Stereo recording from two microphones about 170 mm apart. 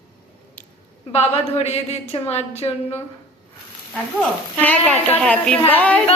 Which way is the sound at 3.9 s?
5° left (ahead or behind).